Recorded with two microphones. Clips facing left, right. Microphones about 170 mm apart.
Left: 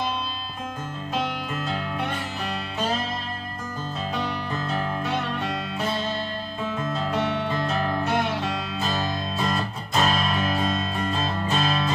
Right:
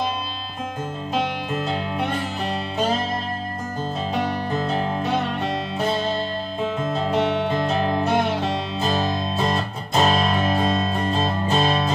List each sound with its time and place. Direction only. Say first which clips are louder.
1.2 s music: right 4 dB; 25° right (ahead or behind)
4.5 s music: right 4 dB; 25° right (ahead or behind)
6.8 s music: right 4 dB; 25° right (ahead or behind)